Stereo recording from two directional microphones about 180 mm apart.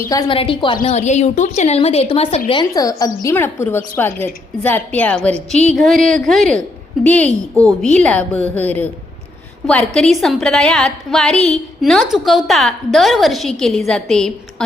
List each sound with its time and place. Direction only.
0.1 s a woman's voice: 25° left (ahead or behind)
0.9 s a woman's voice: 40° left (ahead or behind)
2.5 s a woman's voice: 25° left (ahead or behind); by 14.3 s 5° left (ahead or behind)